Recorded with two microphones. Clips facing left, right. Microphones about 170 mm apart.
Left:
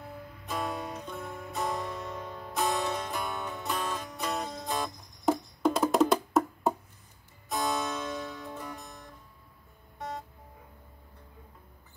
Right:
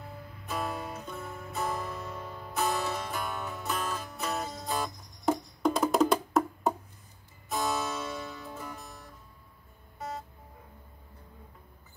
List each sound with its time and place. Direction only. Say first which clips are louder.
0.5 s music: left 1 dB; 5° right (ahead or behind)